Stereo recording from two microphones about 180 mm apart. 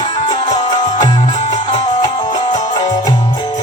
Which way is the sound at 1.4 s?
45° left (ahead or behind).